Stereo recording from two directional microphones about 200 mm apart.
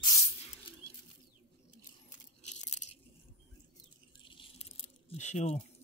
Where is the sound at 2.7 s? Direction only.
35° left (ahead or behind).